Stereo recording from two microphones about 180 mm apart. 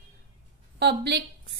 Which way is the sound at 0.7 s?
65° right (ahead or behind).